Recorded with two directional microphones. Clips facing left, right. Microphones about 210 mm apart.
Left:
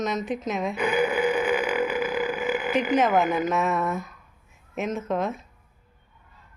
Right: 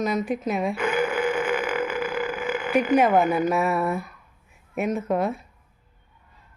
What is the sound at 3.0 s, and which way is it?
Speech, 10° right (ahead or behind).